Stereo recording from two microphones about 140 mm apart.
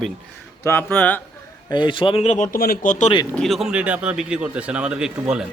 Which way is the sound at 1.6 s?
35° left (ahead or behind).